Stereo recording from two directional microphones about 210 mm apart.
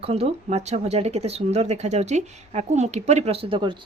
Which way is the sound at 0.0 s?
30° right (ahead or behind).